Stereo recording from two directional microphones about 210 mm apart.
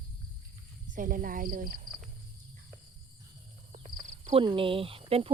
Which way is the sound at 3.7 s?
30° right (ahead or behind).